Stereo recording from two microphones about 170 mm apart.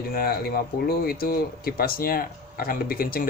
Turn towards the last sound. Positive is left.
turn(degrees=60)  # may be behind; listen again after turning